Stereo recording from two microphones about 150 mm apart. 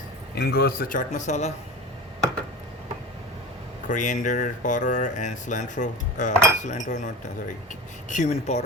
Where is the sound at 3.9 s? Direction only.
55° left (ahead or behind).